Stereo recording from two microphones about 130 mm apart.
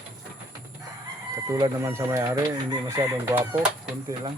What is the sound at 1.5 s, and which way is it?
Speech, 30° right (ahead or behind).